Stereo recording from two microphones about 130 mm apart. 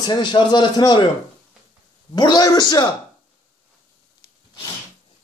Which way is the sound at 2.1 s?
30° left (ahead or behind).